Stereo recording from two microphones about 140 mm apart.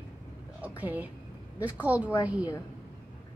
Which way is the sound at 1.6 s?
10° right (ahead or behind).